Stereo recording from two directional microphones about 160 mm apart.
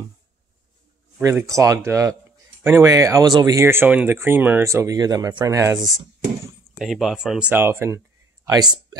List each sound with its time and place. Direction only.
1.1 s speech: 15° right (ahead or behind)
6.8 s speech: centre (ahead or behind)
8.5 s speech: 25° right (ahead or behind)